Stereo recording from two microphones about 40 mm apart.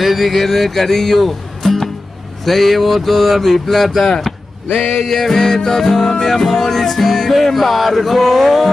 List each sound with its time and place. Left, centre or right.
0.0 s speech: centre
2.4 s music: centre
4.7 s music: left
5.0 s music: centre